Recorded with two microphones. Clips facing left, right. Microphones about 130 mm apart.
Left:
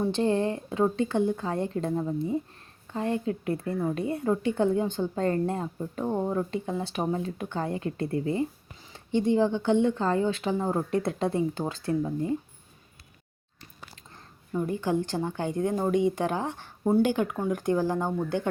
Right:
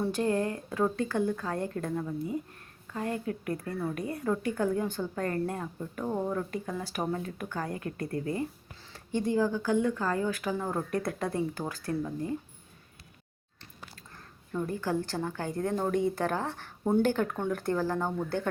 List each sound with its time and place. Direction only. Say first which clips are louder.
0.0 s a woman's voice: left 3 dB; 25° left (ahead or behind)
14.5 s a woman's voice: left 4 dB; 20° left (ahead or behind)